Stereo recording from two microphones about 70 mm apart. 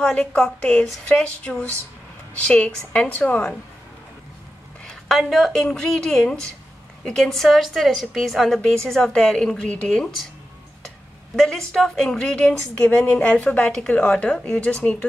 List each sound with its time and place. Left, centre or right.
0.0 s a woman's voice: centre
4.8 s a woman's voice: centre
11.3 s a woman's voice: centre
13.1 s a woman's voice: left